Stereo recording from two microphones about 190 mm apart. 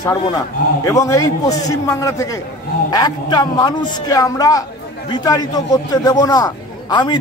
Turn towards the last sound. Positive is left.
turn(degrees=20)  # may be behind; listen again after turning